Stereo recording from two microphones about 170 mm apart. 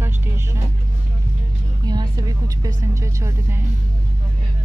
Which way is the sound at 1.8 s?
25° right (ahead or behind).